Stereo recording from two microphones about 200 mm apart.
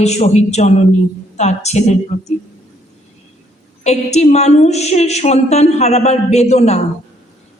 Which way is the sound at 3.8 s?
35° left (ahead or behind).